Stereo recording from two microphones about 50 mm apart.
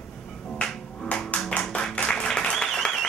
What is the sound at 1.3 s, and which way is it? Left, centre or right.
Tap, left.